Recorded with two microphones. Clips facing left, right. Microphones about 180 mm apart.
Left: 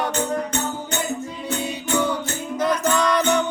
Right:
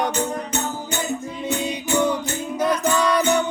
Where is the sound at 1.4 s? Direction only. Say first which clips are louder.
Right 2 dB; 15° right (ahead or behind).